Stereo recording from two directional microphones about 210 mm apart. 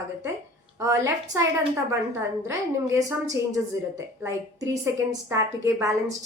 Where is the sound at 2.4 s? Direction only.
15° right (ahead or behind).